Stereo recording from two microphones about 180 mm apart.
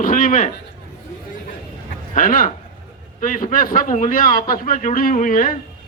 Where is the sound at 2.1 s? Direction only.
50° left (ahead or behind).